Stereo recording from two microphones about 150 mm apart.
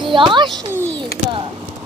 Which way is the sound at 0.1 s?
35° right (ahead or behind).